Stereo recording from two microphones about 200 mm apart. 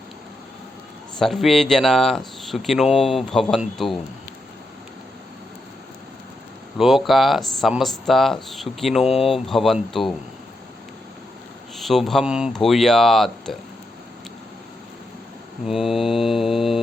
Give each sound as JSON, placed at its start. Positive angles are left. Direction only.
{"t": 1.2, "sound": "speech", "side_deg": 0}
{"t": 6.7, "sound": "speech", "side_deg": 0}
{"t": 11.8, "sound": "speech", "side_deg": 0}
{"t": 15.6, "sound": "speech", "side_deg": 0}